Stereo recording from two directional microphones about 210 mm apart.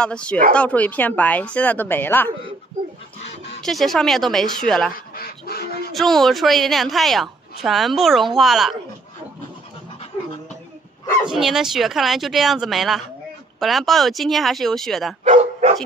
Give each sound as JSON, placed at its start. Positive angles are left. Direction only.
{"t": 0.0, "sound": "a woman's voice", "side_deg": 5}
{"t": 3.6, "sound": "a woman's voice", "side_deg": 0}
{"t": 4.9, "sound": "dog", "side_deg": 45}
{"t": 5.9, "sound": "a woman's voice", "side_deg": 0}
{"t": 11.2, "sound": "a woman's voice", "side_deg": 0}
{"t": 15.2, "sound": "dog", "side_deg": -30}